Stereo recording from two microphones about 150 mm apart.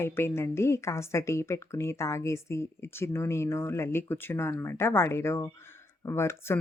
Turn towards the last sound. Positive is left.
turn(degrees=15)  # may be behind; listen again after turning